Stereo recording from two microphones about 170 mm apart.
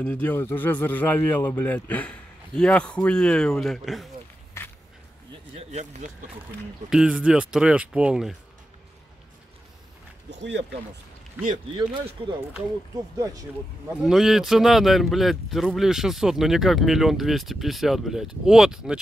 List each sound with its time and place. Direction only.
0.0 s a man's voice: 10° left (ahead or behind)
5.5 s speech: 40° right (ahead or behind)
6.9 s speech: 5° right (ahead or behind)
12.2 s speech: 30° right (ahead or behind)
13.2 s speech: 20° right (ahead or behind)
14.0 s speech: 5° right (ahead or behind)